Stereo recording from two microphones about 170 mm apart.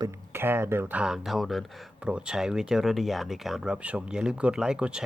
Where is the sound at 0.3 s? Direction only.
15° right (ahead or behind).